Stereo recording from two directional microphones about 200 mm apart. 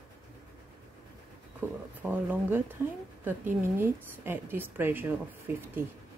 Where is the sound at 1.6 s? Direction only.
10° right (ahead or behind).